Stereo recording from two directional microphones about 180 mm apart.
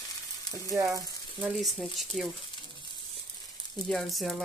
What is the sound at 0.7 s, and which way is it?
Speech, 20° right (ahead or behind).